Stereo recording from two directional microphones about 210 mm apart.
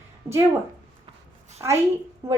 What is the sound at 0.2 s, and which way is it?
Speech, 15° right (ahead or behind).